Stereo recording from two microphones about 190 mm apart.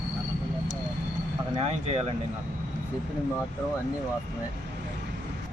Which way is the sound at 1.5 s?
35° right (ahead or behind).